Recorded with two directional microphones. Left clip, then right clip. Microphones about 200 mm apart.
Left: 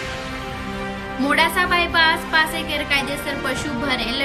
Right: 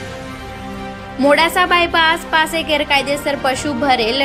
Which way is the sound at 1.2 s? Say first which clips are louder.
Right 6 dB; 20° right (ahead or behind).